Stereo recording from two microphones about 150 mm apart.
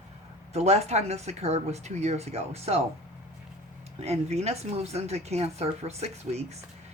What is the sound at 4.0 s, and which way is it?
Speech, 45° right (ahead or behind).